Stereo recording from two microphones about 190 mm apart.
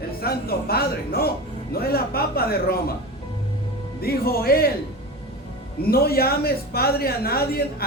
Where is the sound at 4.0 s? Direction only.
55° left (ahead or behind).